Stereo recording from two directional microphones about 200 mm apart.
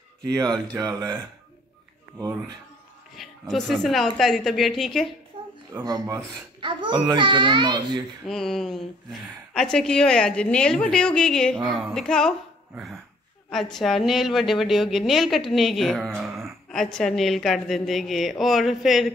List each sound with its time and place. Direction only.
0.3 s a child's voice: 20° right (ahead or behind)
3.2 s a woman's voice: centre (ahead or behind)
5.3 s a sound: 25° right (ahead or behind)
5.8 s a child's voice: 15° right (ahead or behind)
8.3 s a woman's voice: centre (ahead or behind)